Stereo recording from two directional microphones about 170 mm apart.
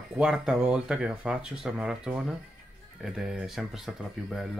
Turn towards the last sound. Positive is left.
turn(degrees=0)  # may be behind; listen again after turning